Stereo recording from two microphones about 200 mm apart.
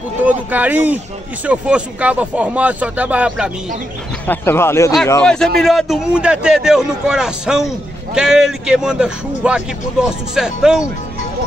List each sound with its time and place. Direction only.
0.2 s speech: 10° right (ahead or behind)
4.3 s a man's voice: 10° left (ahead or behind)